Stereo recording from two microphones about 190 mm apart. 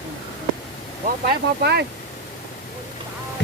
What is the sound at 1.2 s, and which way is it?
Speech, 60° right (ahead or behind).